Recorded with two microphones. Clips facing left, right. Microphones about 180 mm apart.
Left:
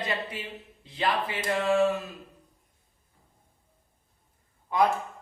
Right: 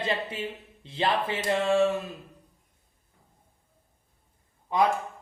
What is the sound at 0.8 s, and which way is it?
Speech, 25° right (ahead or behind).